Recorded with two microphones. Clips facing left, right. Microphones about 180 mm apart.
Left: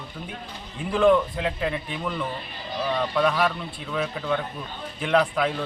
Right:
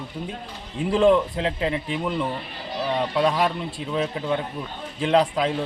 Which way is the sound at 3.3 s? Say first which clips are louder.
Right 1 dB; 20° right (ahead or behind).